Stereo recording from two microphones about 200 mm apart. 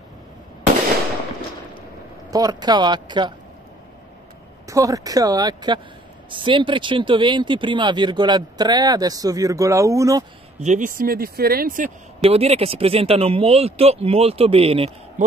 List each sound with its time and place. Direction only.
2.3 s speech: 20° right (ahead or behind)
4.6 s speech: 15° right (ahead or behind)
10.6 s speech: 40° right (ahead or behind)
12.2 s speech: 30° right (ahead or behind)